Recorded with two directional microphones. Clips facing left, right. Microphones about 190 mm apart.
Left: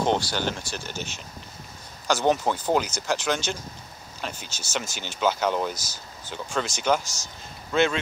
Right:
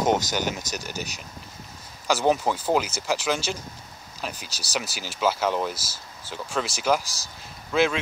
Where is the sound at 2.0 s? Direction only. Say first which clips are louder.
Even; 5° right (ahead or behind).